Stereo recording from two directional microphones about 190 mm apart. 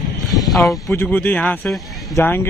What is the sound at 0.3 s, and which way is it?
Speech, centre (ahead or behind).